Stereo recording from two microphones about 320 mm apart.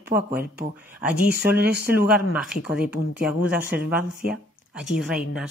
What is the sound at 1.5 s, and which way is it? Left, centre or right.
Speech, right.